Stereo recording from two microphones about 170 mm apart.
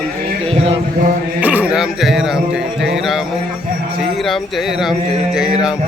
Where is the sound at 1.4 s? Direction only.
10° right (ahead or behind).